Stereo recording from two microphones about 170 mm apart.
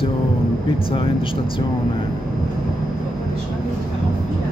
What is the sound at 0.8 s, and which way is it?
Speech, 30° left (ahead or behind).